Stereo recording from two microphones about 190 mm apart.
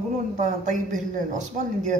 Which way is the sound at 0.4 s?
40° right (ahead or behind).